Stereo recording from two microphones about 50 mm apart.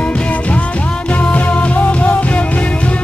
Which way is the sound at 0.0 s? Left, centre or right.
Left.